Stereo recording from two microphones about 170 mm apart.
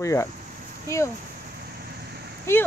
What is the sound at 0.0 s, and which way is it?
Speech, 20° left (ahead or behind).